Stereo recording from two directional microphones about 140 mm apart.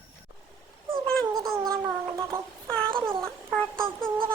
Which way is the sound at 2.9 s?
40° right (ahead or behind).